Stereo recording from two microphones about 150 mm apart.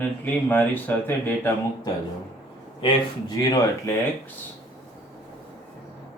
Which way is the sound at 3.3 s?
25° left (ahead or behind).